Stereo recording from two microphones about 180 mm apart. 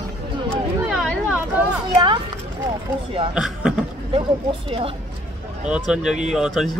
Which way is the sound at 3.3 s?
5° right (ahead or behind).